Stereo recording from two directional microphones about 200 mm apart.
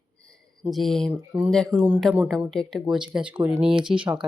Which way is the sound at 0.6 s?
Centre (ahead or behind).